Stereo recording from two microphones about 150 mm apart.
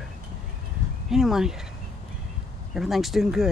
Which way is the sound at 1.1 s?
5° right (ahead or behind).